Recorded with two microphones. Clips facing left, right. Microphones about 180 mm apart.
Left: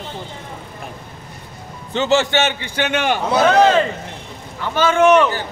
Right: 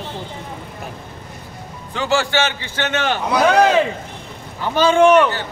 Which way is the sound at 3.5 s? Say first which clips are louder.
Left 1 dB; 10° right (ahead or behind).